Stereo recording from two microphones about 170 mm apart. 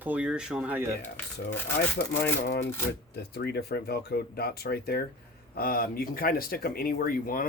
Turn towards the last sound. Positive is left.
turn(degrees=60)  # may be behind; listen again after turning